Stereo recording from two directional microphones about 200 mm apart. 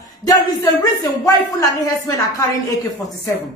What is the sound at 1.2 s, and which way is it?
Speech, 15° left (ahead or behind).